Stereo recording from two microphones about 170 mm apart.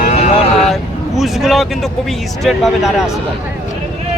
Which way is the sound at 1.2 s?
Centre (ahead or behind).